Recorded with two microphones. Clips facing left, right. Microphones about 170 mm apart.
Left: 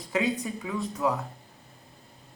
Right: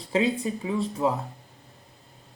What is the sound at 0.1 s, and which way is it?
Speech, 30° right (ahead or behind).